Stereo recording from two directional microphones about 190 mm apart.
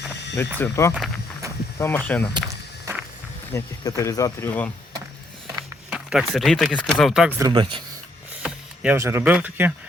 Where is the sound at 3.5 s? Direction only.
15° left (ahead or behind).